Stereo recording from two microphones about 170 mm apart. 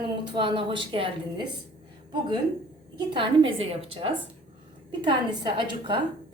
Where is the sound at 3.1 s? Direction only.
30° right (ahead or behind).